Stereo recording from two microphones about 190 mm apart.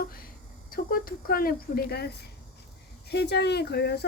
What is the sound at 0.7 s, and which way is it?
Speech, 50° left (ahead or behind).